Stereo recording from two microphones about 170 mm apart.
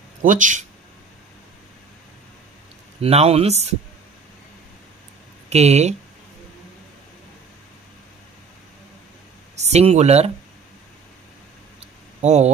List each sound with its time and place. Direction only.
0.2 s speech: 50° right (ahead or behind)
3.0 s speech: 35° right (ahead or behind)
5.5 s speech: 40° right (ahead or behind)
9.6 s speech: 40° right (ahead or behind)
11.8 s a sound: 40° right (ahead or behind)